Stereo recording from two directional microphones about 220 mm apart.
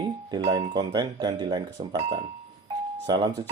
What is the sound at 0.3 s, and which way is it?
Speech, 20° right (ahead or behind).